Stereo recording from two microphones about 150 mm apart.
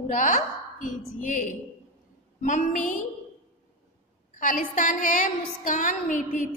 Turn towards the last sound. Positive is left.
turn(degrees=55)  # may be behind; listen again after turning